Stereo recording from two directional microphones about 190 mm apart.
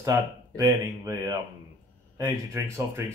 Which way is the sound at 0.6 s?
20° right (ahead or behind).